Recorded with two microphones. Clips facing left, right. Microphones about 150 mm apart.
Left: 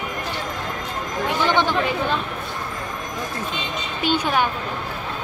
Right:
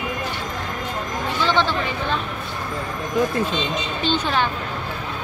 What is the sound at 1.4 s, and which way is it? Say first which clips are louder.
Speech: even; 15° left (ahead or behind).